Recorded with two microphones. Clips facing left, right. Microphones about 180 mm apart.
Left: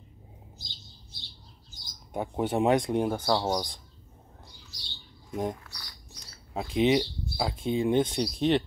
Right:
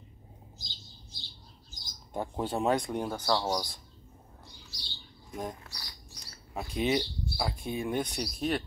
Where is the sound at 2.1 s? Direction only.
20° left (ahead or behind).